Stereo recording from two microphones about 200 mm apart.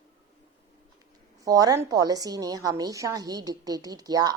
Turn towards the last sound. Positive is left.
turn(degrees=-20)  # may be behind; listen again after turning